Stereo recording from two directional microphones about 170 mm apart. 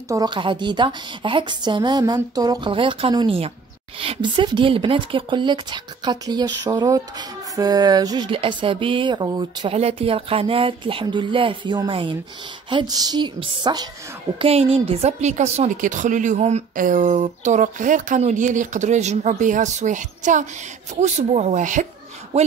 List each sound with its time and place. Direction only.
0.1 s a woman's voice: 25° right (ahead or behind)
14.4 s a woman's voice: 35° right (ahead or behind)